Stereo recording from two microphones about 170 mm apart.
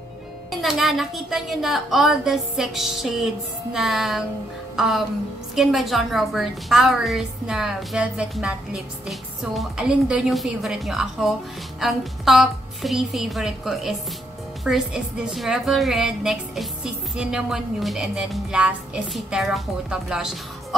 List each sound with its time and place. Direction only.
0.5 s a woman's voice: centre (ahead or behind)